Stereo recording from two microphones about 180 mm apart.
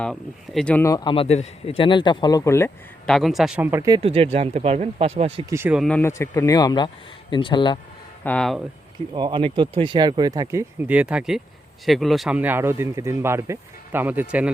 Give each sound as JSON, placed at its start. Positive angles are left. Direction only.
{"t": 0.0, "sound": "speech", "side_deg": 5}
{"t": 3.1, "sound": "speech", "side_deg": 0}
{"t": 4.0, "sound": "speech", "side_deg": -30}
{"t": 5.5, "sound": "speech", "side_deg": -15}
{"t": 5.7, "sound": "speech", "side_deg": 0}
{"t": 6.0, "sound": "speech", "side_deg": 15}
{"t": 8.2, "sound": "speech", "side_deg": 5}
{"t": 9.1, "sound": "speech", "side_deg": -25}